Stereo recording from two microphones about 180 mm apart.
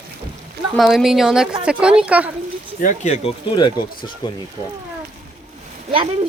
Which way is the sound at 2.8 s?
40° left (ahead or behind).